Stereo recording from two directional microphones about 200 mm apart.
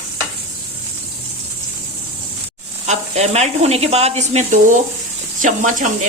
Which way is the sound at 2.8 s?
35° right (ahead or behind).